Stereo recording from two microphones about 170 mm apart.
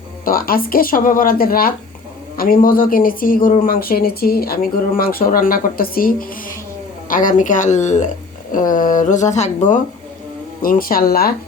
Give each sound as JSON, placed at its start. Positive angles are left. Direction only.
{"t": 0.3, "sound": "speech", "side_deg": 60}
{"t": 10.6, "sound": "speech", "side_deg": 55}